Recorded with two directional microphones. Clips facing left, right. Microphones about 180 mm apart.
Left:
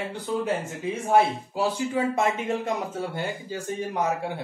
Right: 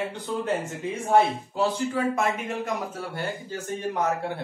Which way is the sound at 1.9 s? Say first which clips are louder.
Left 1 dB; 20° left (ahead or behind).